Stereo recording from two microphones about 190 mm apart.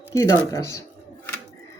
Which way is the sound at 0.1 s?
15° left (ahead or behind).